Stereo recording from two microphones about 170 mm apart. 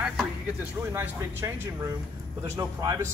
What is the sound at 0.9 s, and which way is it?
Speech, 15° right (ahead or behind).